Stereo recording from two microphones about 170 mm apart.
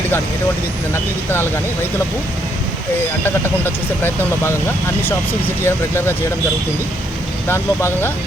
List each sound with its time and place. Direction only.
1.3 s speech: 15° left (ahead or behind)
3.2 s speech: 10° left (ahead or behind)
5.6 s speech: 15° left (ahead or behind)
7.4 s speech: 15° left (ahead or behind)